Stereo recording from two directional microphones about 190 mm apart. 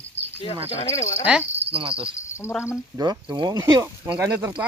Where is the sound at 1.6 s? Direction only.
30° right (ahead or behind).